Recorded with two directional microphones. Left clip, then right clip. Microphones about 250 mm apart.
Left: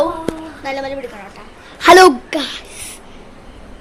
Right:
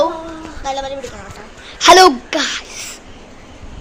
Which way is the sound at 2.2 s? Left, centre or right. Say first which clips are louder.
Right 3 dB; centre.